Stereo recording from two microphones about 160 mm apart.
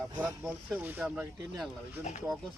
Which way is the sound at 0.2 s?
5° right (ahead or behind).